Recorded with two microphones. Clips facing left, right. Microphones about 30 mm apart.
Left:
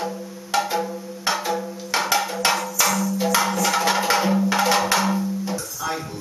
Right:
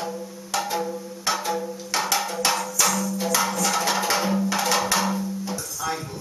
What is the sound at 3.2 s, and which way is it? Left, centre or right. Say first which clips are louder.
Music: left 3 dB; centre.